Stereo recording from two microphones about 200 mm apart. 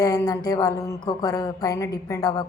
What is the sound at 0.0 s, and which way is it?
Speech, 20° left (ahead or behind).